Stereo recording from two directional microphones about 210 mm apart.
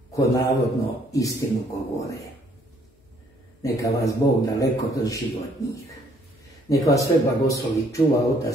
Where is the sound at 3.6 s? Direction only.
15° left (ahead or behind).